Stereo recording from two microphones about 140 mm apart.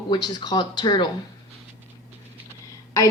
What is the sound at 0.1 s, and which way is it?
Speech, 30° left (ahead or behind).